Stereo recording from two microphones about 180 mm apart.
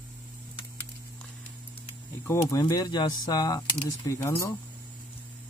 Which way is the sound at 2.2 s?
15° left (ahead or behind).